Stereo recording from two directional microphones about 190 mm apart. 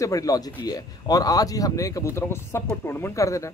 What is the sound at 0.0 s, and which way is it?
A man's voice, 20° left (ahead or behind).